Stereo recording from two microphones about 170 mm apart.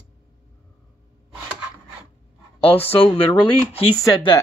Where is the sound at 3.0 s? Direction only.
35° left (ahead or behind).